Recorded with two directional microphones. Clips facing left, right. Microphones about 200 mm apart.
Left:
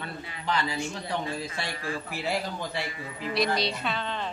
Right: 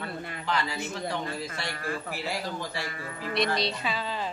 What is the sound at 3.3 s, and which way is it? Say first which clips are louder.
Speech: left 1 dB; centre (ahead or behind).